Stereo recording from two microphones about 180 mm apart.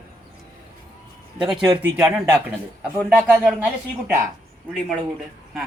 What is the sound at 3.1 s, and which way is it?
Speech, 5° right (ahead or behind).